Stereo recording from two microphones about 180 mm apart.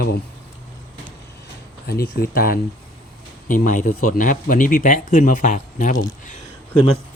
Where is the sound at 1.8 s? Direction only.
60° left (ahead or behind); by 6.3 s 45° left (ahead or behind).